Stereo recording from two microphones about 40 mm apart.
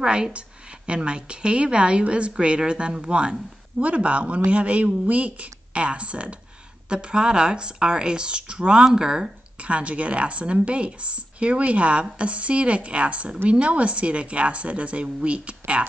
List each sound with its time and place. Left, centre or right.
0.0 s a woman's voice: centre
9.6 s speech: right